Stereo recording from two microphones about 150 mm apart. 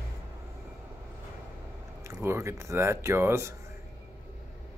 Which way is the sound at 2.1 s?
15° right (ahead or behind).